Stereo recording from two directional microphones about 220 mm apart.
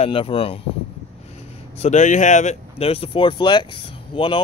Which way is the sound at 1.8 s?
30° left (ahead or behind).